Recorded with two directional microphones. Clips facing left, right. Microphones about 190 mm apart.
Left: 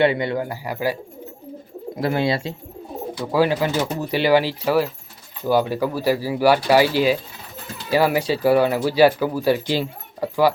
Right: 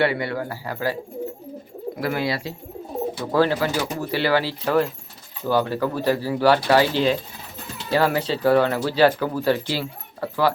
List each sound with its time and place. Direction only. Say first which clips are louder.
0.0 s speech: left 3 dB; 20° left (ahead or behind)
2.0 s speech: left 4 dB; 25° left (ahead or behind)
3.3 s speech: left 1 dB; 15° left (ahead or behind)